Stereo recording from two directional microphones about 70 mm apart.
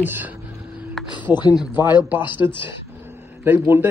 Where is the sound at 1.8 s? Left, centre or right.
Left.